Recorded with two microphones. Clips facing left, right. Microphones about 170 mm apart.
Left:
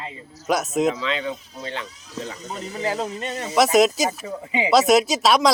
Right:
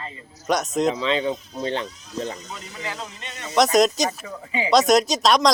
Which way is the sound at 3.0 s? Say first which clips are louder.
Left 9 dB; 45° left (ahead or behind).